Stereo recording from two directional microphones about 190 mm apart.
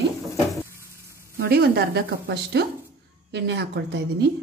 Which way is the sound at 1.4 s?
55° right (ahead or behind).